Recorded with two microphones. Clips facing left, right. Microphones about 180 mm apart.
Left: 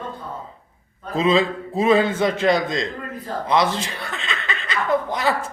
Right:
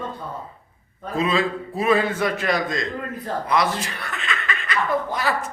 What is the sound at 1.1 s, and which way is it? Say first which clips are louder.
A man's voice: left 3 dB; 25° left (ahead or behind).